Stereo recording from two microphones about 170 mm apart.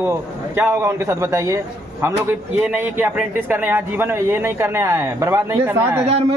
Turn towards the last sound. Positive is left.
turn(degrees=-15)  # may be behind; listen again after turning